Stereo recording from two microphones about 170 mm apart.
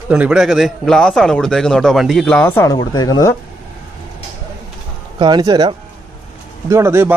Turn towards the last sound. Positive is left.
turn(degrees=-15)  # may be behind; listen again after turning